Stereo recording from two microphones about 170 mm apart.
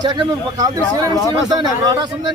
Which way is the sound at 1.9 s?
25° right (ahead or behind).